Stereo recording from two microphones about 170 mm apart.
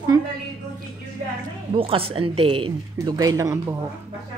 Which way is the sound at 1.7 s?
35° right (ahead or behind).